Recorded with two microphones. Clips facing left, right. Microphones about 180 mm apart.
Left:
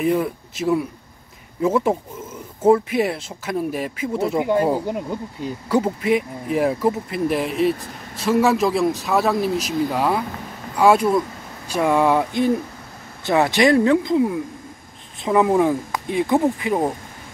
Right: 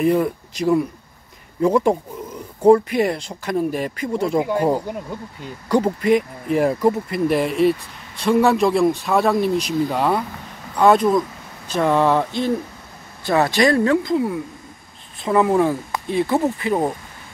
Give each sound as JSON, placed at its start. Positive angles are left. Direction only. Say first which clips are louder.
{"t": 0.0, "sound": "speech", "louder": "right 2 dB", "side_deg": 0}